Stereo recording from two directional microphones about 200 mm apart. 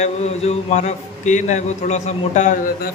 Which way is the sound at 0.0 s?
35° left (ahead or behind).